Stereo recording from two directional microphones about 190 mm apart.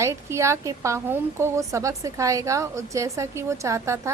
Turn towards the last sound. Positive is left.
turn(degrees=-15)  # may be behind; listen again after turning